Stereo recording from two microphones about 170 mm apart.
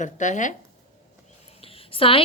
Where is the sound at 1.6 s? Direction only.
35° left (ahead or behind).